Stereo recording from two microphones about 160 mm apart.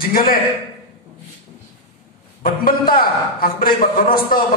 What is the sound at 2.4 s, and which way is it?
A man's voice, 65° left (ahead or behind).